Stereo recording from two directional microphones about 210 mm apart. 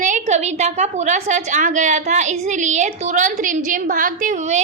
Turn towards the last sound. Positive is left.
turn(degrees=-35)  # may be behind; listen again after turning